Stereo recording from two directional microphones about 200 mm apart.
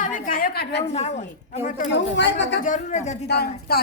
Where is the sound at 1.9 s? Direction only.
60° left (ahead or behind).